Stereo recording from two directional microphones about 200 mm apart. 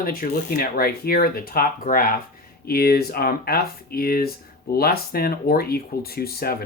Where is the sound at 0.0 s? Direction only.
45° left (ahead or behind).